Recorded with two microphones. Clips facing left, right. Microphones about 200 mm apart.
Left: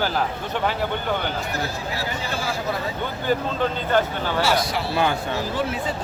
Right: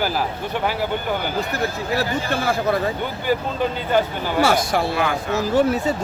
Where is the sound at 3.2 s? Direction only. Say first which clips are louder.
Right 1 dB; 10° right (ahead or behind).